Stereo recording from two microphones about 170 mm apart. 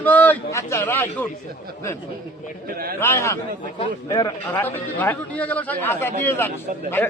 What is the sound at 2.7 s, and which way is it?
Speech, 60° right (ahead or behind).